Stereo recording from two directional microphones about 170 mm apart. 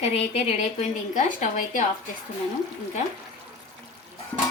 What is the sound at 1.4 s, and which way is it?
Speech, 45° left (ahead or behind).